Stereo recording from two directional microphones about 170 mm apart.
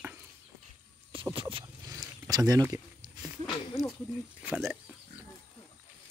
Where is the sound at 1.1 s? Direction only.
30° right (ahead or behind).